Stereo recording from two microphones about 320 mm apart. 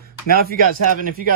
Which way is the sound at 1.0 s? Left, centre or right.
Right.